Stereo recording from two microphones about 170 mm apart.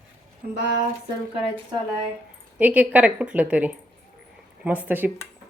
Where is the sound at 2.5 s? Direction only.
10° right (ahead or behind).